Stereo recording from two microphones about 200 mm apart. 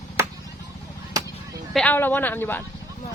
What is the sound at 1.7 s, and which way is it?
Speech, 10° left (ahead or behind).